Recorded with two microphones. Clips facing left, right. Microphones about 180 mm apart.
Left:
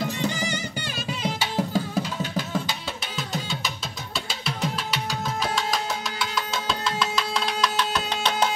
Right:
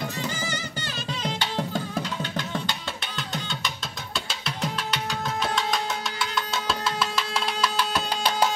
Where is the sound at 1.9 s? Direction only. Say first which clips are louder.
Left 2 dB; 5° left (ahead or behind).